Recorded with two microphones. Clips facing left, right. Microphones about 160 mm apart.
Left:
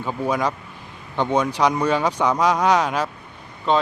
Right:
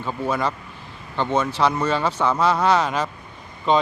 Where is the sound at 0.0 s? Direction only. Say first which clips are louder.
Left 1 dB; 10° left (ahead or behind).